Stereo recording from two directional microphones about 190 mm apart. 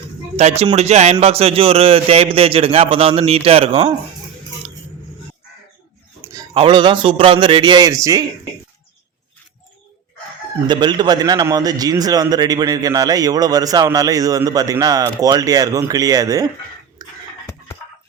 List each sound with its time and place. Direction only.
0.3 s a man's voice: 35° right (ahead or behind)
6.3 s a man's voice: 25° right (ahead or behind)
10.7 s a man's voice: 20° right (ahead or behind)
17.0 s a sound: 20° right (ahead or behind)